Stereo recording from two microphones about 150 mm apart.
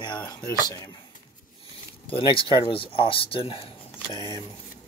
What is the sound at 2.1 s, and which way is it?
Speech, 35° left (ahead or behind).